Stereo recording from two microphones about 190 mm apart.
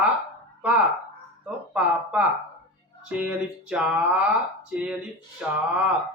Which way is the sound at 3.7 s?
5° right (ahead or behind).